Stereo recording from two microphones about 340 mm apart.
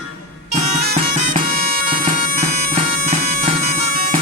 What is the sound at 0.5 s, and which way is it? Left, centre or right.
Bagpipes, right.